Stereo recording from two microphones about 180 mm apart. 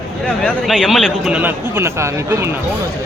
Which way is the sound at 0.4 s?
5° left (ahead or behind).